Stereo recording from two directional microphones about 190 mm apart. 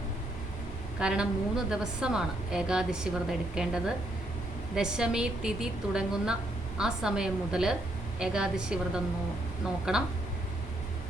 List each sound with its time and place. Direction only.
0.9 s a woman's voice: 5° right (ahead or behind)